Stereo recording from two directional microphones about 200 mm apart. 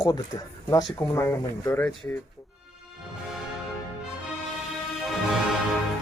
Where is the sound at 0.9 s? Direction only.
15° left (ahead or behind).